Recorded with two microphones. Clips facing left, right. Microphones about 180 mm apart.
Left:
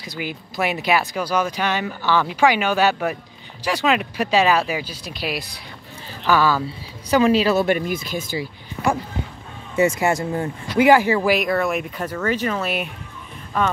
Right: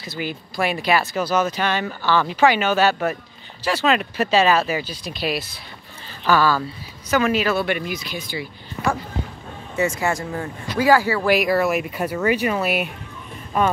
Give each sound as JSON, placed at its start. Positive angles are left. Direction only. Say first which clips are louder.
{"t": 0.0, "sound": "speech", "louder": "right 1 dB", "side_deg": 15}
{"t": 7.1, "sound": "speech", "louder": "left 3 dB", "side_deg": 30}
{"t": 9.8, "sound": "speech", "louder": "left 4 dB", "side_deg": 20}
{"t": 11.2, "sound": "speech", "louder": "right 1 dB", "side_deg": -5}